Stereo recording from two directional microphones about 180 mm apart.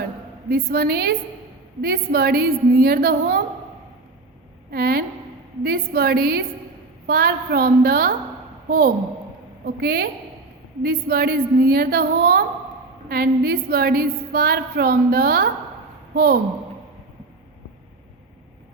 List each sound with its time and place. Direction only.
0.5 s a woman's voice: 55° right (ahead or behind)
4.7 s a woman's voice: 60° right (ahead or behind)
9.6 s a woman's voice: 60° right (ahead or behind)